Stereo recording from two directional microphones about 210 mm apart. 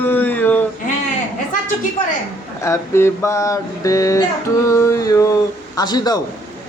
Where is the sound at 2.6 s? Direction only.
15° left (ahead or behind).